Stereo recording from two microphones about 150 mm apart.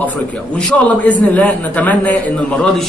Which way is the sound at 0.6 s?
10° left (ahead or behind).